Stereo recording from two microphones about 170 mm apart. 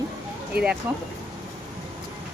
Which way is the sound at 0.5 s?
70° right (ahead or behind).